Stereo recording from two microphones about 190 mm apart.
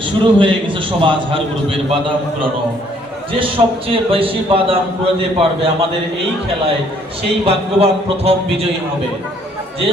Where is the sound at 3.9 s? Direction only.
30° right (ahead or behind).